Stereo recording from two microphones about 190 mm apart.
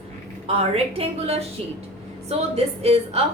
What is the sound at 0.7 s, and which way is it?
A woman's voice, 35° right (ahead or behind).